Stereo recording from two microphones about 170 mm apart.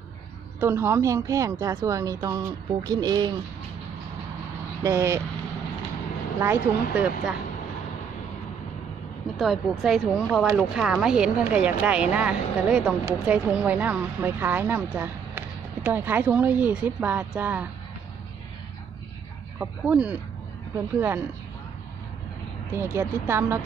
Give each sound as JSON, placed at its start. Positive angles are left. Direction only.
{"t": 0.6, "sound": "speech", "side_deg": -15}
{"t": 4.8, "sound": "speech", "side_deg": -15}
{"t": 6.4, "sound": "speech", "side_deg": -10}
{"t": 9.4, "sound": "speech", "side_deg": 0}
{"t": 19.6, "sound": "speech", "side_deg": -10}
{"t": 22.7, "sound": "speech", "side_deg": -15}